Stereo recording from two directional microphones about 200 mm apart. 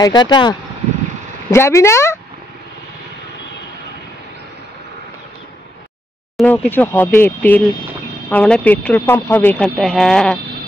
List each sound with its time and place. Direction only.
0.0 s speech: 20° left (ahead or behind)
6.3 s speech: 10° left (ahead or behind)